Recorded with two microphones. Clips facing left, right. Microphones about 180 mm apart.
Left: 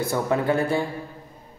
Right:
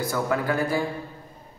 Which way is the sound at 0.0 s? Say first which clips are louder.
Left 2 dB; 25° left (ahead or behind).